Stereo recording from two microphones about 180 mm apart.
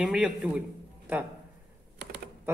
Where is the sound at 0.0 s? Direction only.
5° right (ahead or behind).